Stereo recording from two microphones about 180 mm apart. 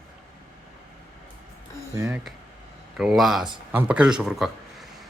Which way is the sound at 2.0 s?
15° right (ahead or behind).